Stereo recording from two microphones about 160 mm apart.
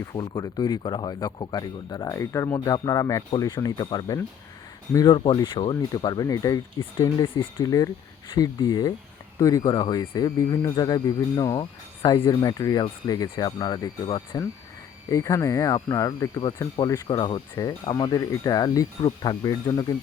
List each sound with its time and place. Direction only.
0.1 s speech: 25° left (ahead or behind)